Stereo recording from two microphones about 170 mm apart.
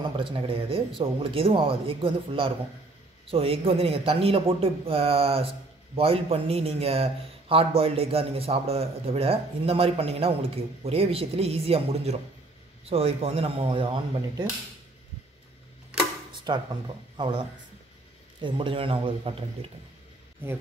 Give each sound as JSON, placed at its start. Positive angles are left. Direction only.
{"t": 0.2, "sound": "a man's voice", "side_deg": -30}
{"t": 16.5, "sound": "a man's voice", "side_deg": -25}